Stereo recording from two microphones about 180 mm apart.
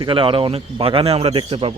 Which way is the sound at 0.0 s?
30° right (ahead or behind).